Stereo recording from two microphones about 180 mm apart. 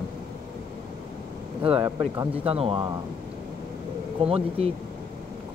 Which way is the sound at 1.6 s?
30° right (ahead or behind).